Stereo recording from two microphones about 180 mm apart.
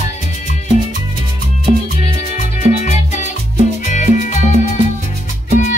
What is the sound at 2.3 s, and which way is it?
Music, 40° left (ahead or behind).